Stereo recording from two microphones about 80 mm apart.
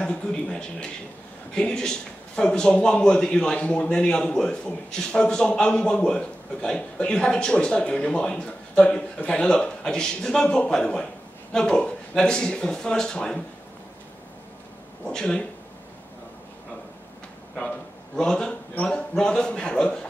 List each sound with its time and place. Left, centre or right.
0.0 s a man's voice: centre
15.0 s a man's voice: centre
17.6 s a man's voice: centre